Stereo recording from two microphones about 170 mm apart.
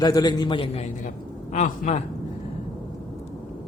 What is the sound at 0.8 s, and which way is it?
A man's voice, 45° left (ahead or behind).